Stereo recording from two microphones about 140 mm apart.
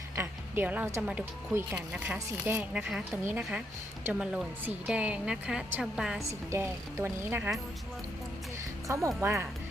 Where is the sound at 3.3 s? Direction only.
15° right (ahead or behind).